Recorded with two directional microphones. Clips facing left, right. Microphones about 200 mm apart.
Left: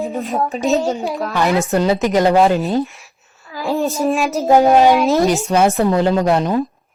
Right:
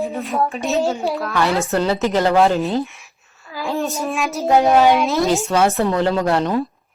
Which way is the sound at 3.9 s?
35° left (ahead or behind).